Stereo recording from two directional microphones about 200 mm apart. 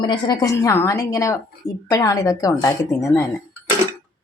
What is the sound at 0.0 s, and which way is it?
A woman's voice, 20° left (ahead or behind).